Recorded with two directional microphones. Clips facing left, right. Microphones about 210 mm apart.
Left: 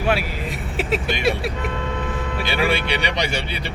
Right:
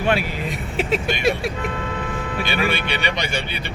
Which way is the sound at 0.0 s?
5° left (ahead or behind).